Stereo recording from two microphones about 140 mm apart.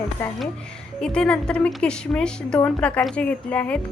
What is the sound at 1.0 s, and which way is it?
A woman's voice, 5° left (ahead or behind).